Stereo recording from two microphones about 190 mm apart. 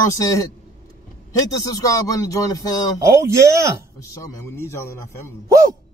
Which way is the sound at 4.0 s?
15° left (ahead or behind).